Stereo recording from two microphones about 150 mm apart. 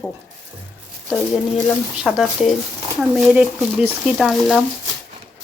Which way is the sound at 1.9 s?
Centre (ahead or behind).